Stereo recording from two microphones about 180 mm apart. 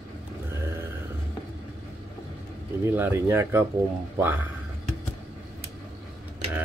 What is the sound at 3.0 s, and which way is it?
Speech, 15° right (ahead or behind).